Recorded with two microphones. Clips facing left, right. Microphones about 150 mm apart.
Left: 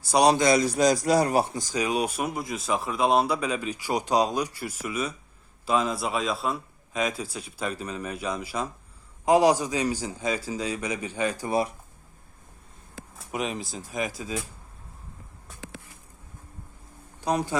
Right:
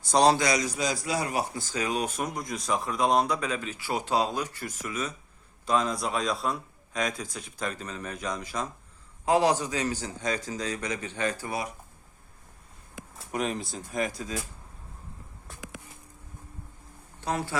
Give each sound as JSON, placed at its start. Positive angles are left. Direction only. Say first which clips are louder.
{"t": 0.1, "sound": "a man's voice", "louder": "left 1 dB", "side_deg": 10}
{"t": 0.3, "sound": "a man's voice", "louder": "left 5 dB", "side_deg": 25}
{"t": 0.8, "sound": "a man's voice", "louder": "left 8 dB", "side_deg": 40}
{"t": 1.5, "sound": "speech", "louder": "left 3 dB", "side_deg": 15}
{"t": 11.4, "sound": "a man's voice", "louder": "left 7 dB", "side_deg": 30}
{"t": 13.1, "sound": "speech", "louder": "even", "side_deg": 0}
{"t": 17.2, "sound": "speech", "louder": "left 4 dB", "side_deg": 15}